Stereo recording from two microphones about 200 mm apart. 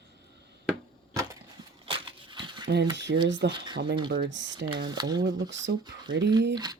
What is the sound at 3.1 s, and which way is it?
Speech, 60° right (ahead or behind).